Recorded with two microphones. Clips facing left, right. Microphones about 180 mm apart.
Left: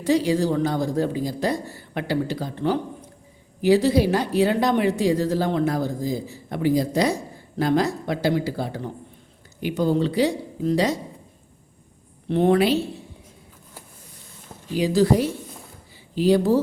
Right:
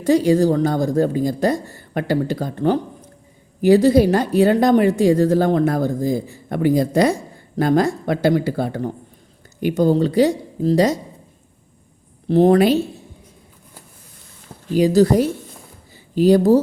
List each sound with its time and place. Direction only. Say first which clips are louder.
0.0 s a woman's voice: right 5 dB; 45° right (ahead or behind)
12.3 s a woman's voice: right 5 dB; 40° right (ahead or behind)
14.8 s a woman's voice: right 5 dB; 45° right (ahead or behind)